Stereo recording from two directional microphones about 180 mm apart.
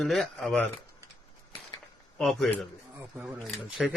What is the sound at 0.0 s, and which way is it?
Speech, centre (ahead or behind).